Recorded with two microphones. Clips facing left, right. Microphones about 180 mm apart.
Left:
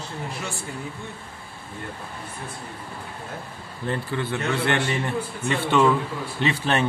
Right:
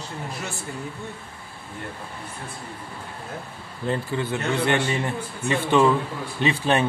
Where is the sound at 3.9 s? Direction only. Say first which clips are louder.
Right 1 dB; 15° right (ahead or behind).